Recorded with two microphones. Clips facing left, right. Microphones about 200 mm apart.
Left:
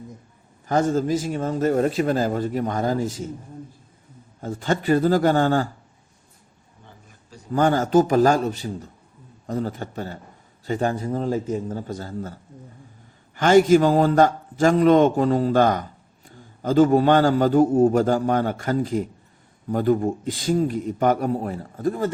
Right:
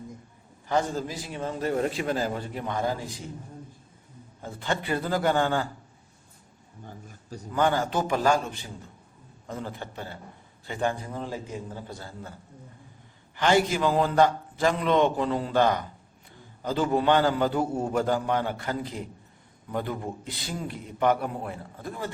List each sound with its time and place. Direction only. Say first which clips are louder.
0.7 s a man's voice: left 7 dB; 45° left (ahead or behind)
4.4 s a man's voice: left 8 dB; 40° left (ahead or behind)
7.5 s a man's voice: left 7 dB; 45° left (ahead or behind)
13.3 s a man's voice: left 9 dB; 45° left (ahead or behind)